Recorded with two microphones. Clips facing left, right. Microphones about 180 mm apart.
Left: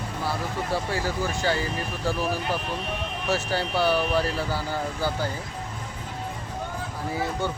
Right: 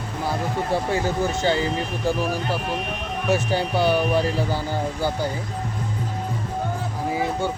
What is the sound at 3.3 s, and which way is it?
Speech, 20° right (ahead or behind).